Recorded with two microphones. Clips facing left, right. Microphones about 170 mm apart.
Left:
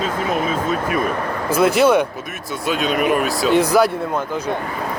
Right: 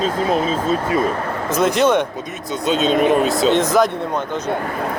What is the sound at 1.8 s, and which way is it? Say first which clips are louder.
Speech: left 1 dB; 10° left (ahead or behind).